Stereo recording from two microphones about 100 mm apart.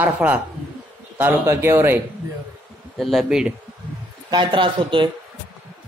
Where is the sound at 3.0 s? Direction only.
Centre (ahead or behind).